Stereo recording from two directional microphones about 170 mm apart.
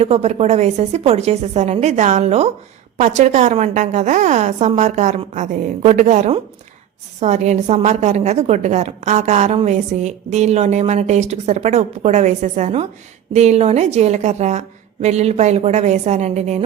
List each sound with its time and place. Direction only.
0.0 s a woman's voice: 40° right (ahead or behind)